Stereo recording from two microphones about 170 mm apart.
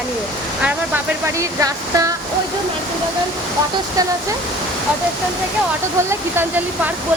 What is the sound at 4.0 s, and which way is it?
Speech, 20° right (ahead or behind).